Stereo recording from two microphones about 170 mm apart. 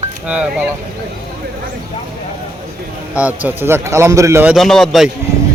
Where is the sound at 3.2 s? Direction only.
10° right (ahead or behind).